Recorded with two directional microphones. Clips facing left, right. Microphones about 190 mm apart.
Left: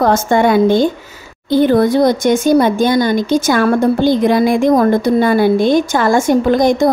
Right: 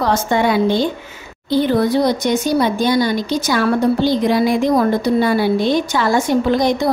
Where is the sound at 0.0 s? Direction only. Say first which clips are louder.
Left 4 dB; 50° left (ahead or behind).